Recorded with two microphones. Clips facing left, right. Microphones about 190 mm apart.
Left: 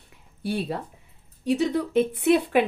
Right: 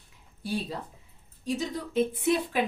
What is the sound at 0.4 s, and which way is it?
A woman's voice, 60° left (ahead or behind).